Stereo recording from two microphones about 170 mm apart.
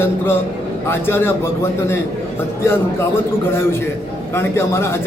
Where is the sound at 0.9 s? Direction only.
15° left (ahead or behind).